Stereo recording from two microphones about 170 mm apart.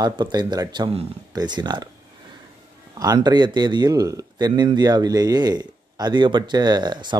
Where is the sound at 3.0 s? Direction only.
20° right (ahead or behind).